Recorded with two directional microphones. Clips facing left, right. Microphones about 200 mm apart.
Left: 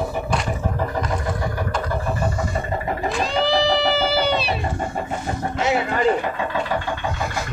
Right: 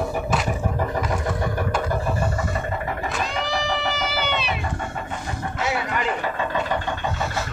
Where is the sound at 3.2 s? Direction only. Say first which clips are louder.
Left 9 dB; 30° left (ahead or behind).